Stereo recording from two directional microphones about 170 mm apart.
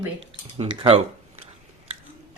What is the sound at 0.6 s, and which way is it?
Speech, 35° right (ahead or behind).